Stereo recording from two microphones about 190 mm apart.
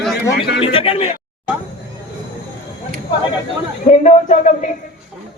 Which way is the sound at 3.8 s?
40° left (ahead or behind).